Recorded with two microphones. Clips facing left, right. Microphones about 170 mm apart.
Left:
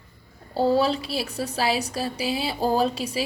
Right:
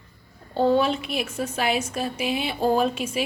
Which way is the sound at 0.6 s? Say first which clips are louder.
Right 1 dB; 35° left (ahead or behind).